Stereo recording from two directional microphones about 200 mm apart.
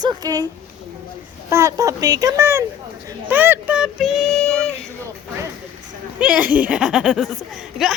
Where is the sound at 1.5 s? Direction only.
15° right (ahead or behind); by 4.9 s 5° left (ahead or behind).